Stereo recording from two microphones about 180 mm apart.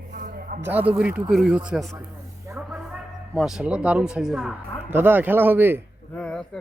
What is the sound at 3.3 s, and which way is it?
Speech, 5° right (ahead or behind).